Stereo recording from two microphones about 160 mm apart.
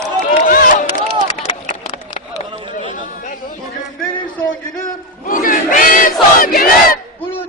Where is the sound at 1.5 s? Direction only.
45° left (ahead or behind).